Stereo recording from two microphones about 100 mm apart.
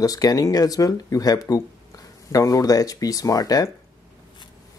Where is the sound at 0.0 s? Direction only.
40° left (ahead or behind).